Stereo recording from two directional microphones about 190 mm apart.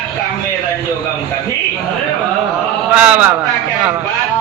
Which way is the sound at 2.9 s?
5° right (ahead or behind).